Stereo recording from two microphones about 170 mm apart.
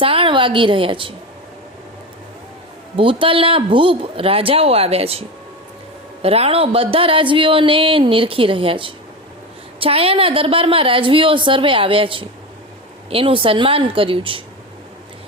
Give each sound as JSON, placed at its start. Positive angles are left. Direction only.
{"t": 0.0, "sound": "speech", "side_deg": -35}
{"t": 2.9, "sound": "speech", "side_deg": -30}
{"t": 6.2, "sound": "speech", "side_deg": -35}